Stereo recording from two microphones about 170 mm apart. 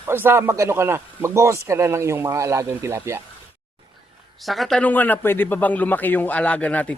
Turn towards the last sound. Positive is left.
turn(degrees=10)  # may be behind; listen again after turning